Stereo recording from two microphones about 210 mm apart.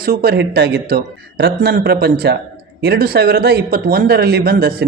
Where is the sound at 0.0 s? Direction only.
45° right (ahead or behind).